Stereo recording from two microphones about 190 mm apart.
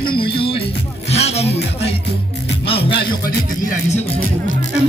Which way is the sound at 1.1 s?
35° left (ahead or behind).